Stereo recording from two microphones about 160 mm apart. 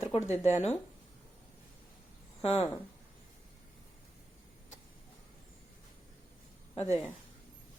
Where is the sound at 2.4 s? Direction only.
40° left (ahead or behind).